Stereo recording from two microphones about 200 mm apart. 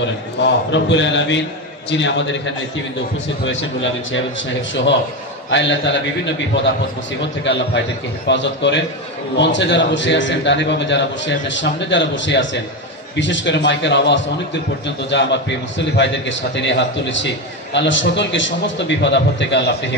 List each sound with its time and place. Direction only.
0.7 s a man's voice: 65° left (ahead or behind)
5.5 s a man's voice: 65° left (ahead or behind)